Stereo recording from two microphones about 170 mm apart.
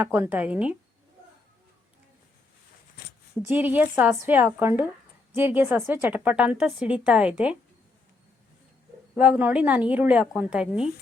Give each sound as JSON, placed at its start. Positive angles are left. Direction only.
{"t": 0.0, "sound": "speech", "side_deg": -10}
{"t": 3.4, "sound": "speech", "side_deg": -10}
{"t": 9.1, "sound": "speech", "side_deg": -5}